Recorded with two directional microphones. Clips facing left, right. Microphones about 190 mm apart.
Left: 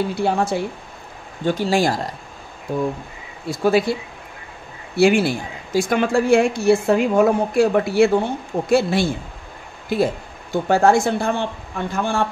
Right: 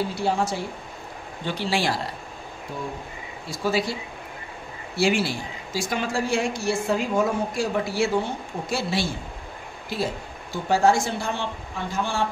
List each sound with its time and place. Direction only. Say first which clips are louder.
0.1 s speech: left 5 dB; 60° left (ahead or behind)
1.4 s speech: left 7 dB; 45° left (ahead or behind)
3.4 s speech: left 7 dB; 55° left (ahead or behind)
4.9 s speech: left 7 dB; 55° left (ahead or behind)